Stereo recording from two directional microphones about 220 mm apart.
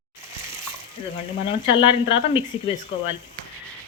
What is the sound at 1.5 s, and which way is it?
Speech, 20° left (ahead or behind).